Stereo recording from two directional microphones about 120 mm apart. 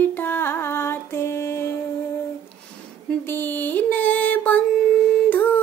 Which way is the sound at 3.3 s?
15° left (ahead or behind).